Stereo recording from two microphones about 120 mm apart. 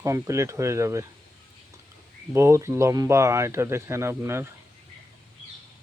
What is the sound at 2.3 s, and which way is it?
Speech, 25° right (ahead or behind).